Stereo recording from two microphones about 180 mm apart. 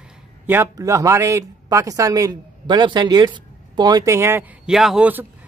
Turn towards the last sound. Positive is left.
turn(degrees=-10)  # may be behind; listen again after turning